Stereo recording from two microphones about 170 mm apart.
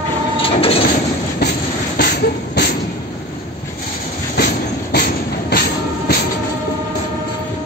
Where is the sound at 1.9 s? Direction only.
60° left (ahead or behind).